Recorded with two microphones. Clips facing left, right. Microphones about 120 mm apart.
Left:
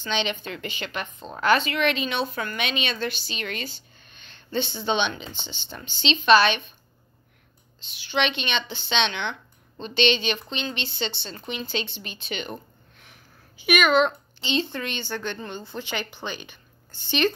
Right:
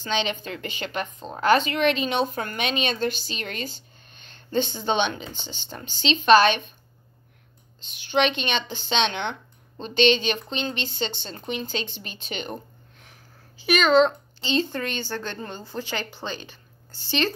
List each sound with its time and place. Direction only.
0.0 s speech: 35° right (ahead or behind)
7.8 s a woman's voice: 45° right (ahead or behind)
15.8 s speech: 20° left (ahead or behind)